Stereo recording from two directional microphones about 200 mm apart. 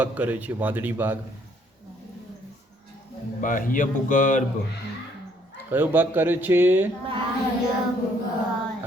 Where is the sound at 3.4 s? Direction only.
40° left (ahead or behind).